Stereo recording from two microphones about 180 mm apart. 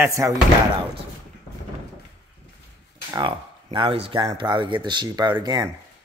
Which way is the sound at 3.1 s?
25° right (ahead or behind).